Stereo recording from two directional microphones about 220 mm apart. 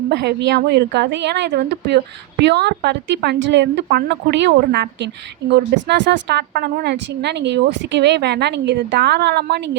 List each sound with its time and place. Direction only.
0.1 s a woman's voice: 50° right (ahead or behind)